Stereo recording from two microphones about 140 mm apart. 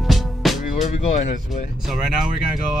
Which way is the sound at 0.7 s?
60° left (ahead or behind).